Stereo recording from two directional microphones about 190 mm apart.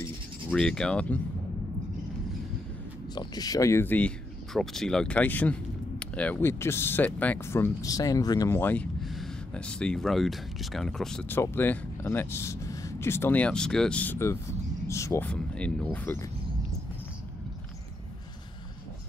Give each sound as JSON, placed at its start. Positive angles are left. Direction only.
{"t": 0.5, "sound": "speech", "side_deg": 5}
{"t": 3.2, "sound": "speech", "side_deg": 20}